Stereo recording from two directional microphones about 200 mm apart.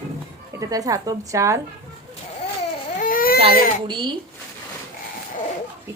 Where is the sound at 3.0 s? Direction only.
45° left (ahead or behind).